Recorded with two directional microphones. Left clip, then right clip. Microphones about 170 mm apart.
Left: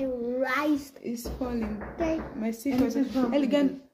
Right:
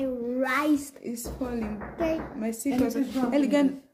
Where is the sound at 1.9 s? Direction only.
20° right (ahead or behind).